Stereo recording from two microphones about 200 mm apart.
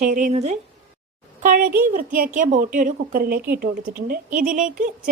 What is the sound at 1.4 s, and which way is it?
A woman's voice, 45° right (ahead or behind).